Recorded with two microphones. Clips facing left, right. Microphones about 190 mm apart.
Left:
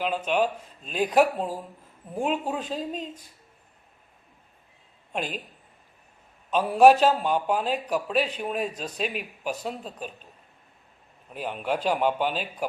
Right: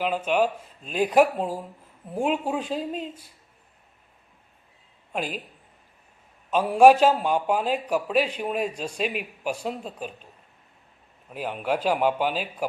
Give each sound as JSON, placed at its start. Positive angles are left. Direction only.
{"t": 0.0, "sound": "a man's voice", "side_deg": -10}
{"t": 5.1, "sound": "a man's voice", "side_deg": -5}
{"t": 6.5, "sound": "a man's voice", "side_deg": -10}
{"t": 11.3, "sound": "a man's voice", "side_deg": -5}